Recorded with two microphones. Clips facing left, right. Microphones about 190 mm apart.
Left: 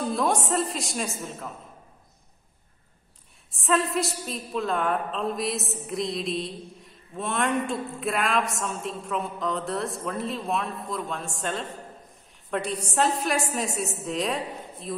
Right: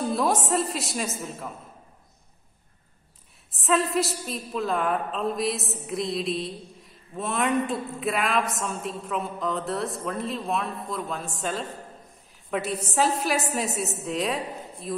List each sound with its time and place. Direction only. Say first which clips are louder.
0.0 s a woman's voice: right 1 dB; centre (ahead or behind)
3.5 s a woman's voice: right 1 dB; centre (ahead or behind)